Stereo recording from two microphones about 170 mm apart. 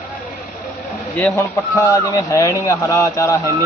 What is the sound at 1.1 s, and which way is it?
A man's voice, 10° left (ahead or behind).